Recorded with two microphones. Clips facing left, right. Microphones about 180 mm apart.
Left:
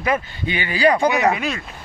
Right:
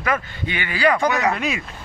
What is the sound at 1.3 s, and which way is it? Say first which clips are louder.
Speech: even; centre (ahead or behind).